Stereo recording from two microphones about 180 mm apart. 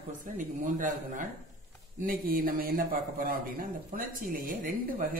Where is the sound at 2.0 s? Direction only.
50° right (ahead or behind).